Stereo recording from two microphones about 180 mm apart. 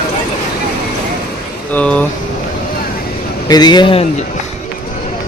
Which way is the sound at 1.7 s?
5° left (ahead or behind).